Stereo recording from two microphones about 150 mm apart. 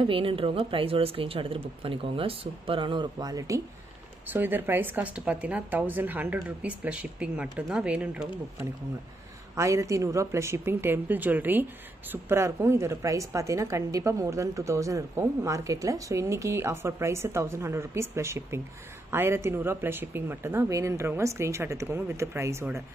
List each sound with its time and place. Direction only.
0.0 s speech: 35° right (ahead or behind); by 8.6 s 10° right (ahead or behind)
9.6 s a woman's voice: 20° right (ahead or behind)